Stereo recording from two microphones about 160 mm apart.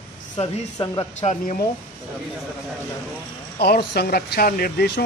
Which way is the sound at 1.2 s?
45° left (ahead or behind).